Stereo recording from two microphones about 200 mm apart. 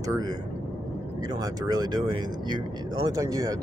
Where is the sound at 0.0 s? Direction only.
15° right (ahead or behind).